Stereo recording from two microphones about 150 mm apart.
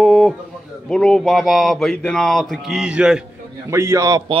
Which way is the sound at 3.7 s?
20° right (ahead or behind).